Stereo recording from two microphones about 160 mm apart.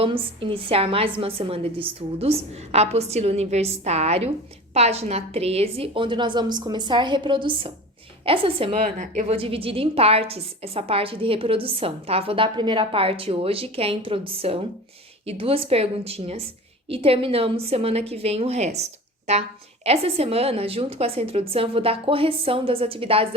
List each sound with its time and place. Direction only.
0.0 s a woman's voice: 35° right (ahead or behind)